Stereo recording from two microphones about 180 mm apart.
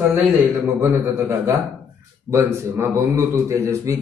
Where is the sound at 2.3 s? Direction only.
15° right (ahead or behind).